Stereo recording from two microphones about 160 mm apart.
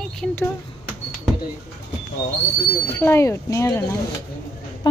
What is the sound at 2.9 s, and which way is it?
Speech, 15° left (ahead or behind).